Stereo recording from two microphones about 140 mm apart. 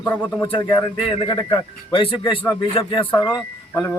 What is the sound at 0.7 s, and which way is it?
A man's voice, 30° left (ahead or behind).